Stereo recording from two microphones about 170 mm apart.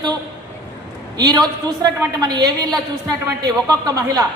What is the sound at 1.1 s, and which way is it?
A woman's voice, 25° right (ahead or behind).